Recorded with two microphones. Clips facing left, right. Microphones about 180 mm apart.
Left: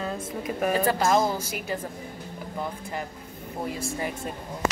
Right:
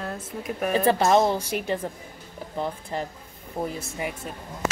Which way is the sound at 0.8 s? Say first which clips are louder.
Right 5 dB; 25° right (ahead or behind).